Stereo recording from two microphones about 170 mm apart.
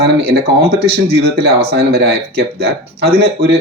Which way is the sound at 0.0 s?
70° right (ahead or behind).